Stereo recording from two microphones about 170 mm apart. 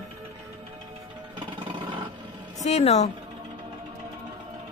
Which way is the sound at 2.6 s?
40° left (ahead or behind).